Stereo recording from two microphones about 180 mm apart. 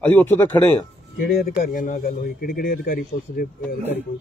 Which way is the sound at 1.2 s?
55° left (ahead or behind).